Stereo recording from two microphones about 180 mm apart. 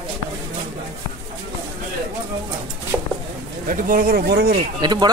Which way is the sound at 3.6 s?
50° right (ahead or behind).